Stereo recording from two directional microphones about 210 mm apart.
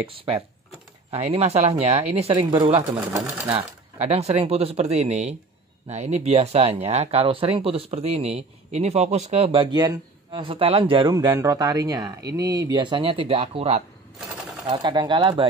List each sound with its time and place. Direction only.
0.1 s speech: 25° right (ahead or behind)
4.0 s speech: 30° right (ahead or behind)